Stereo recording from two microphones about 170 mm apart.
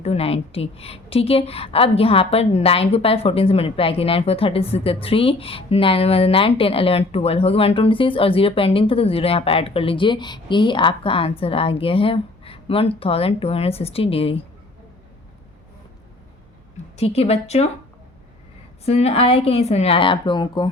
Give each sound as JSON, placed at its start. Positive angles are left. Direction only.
{"t": 0.0, "sound": "a woman's voice", "side_deg": 35}
{"t": 17.0, "sound": "a woman's voice", "side_deg": 40}
{"t": 18.9, "sound": "a woman's voice", "side_deg": 35}